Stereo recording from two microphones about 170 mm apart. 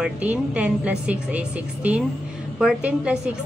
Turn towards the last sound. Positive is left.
turn(degrees=-5)  # may be behind; listen again after turning